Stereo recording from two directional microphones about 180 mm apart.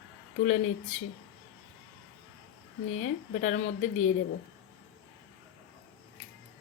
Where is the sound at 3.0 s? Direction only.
45° left (ahead or behind).